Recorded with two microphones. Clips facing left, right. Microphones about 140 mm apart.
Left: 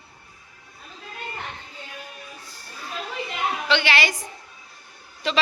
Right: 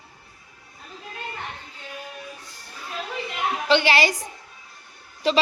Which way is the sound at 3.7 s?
40° right (ahead or behind).